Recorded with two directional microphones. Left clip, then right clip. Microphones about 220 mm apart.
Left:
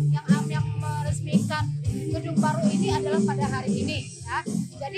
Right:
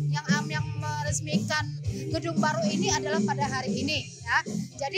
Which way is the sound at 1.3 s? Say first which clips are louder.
Left 2 dB; 45° right (ahead or behind).